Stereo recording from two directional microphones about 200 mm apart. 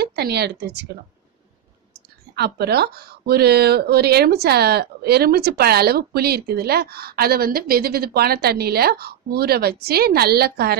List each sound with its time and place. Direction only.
0.0 s speech: 55° right (ahead or behind)
2.3 s speech: 55° right (ahead or behind)